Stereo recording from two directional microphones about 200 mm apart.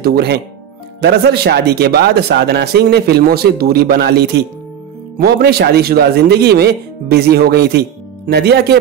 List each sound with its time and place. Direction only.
0.0 s speech: 55° right (ahead or behind)